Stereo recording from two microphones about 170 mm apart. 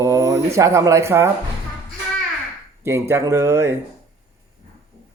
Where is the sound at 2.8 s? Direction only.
15° right (ahead or behind).